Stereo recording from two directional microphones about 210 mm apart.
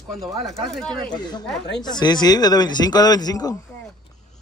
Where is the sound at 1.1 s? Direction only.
20° left (ahead or behind).